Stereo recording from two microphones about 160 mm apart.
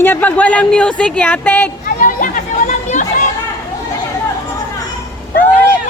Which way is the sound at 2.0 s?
55° left (ahead or behind).